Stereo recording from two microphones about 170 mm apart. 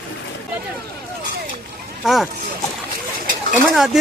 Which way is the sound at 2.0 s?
Centre (ahead or behind).